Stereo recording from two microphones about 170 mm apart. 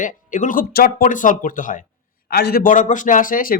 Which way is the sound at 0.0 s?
50° left (ahead or behind).